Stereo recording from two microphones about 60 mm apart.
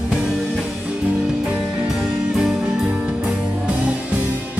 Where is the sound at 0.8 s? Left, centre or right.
Centre.